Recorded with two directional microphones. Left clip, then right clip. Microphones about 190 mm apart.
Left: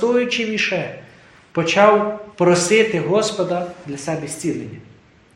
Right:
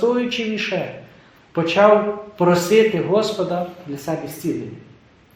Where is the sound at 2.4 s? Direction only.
30° left (ahead or behind).